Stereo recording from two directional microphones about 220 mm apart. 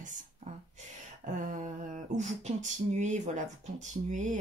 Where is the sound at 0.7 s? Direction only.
35° right (ahead or behind).